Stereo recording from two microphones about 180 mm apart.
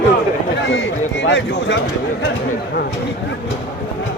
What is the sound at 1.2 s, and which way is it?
Speech, 75° left (ahead or behind).